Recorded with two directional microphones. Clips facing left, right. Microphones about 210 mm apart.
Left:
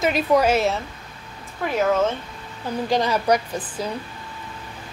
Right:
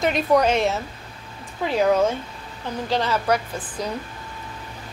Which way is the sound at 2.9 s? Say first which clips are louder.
Left 2 dB; 15° left (ahead or behind).